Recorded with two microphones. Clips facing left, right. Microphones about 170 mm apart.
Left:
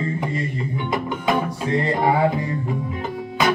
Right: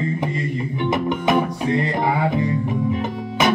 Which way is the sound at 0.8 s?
20° right (ahead or behind).